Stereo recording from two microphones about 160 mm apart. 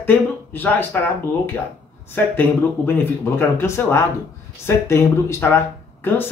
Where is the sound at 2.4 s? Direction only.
15° left (ahead or behind).